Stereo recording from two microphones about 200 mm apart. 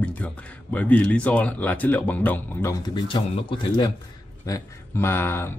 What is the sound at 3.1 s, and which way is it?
Speech, 25° left (ahead or behind).